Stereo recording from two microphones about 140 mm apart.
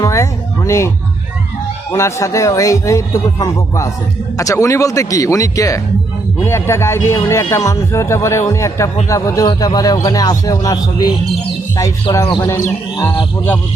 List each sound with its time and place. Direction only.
0.0 s speech: 20° left (ahead or behind)
1.9 s a man's voice: 20° left (ahead or behind)
12.4 s a man's voice: 20° left (ahead or behind)